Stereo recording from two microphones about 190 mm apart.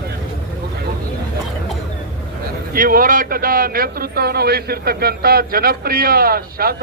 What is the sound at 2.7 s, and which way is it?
A man's voice, 45° right (ahead or behind).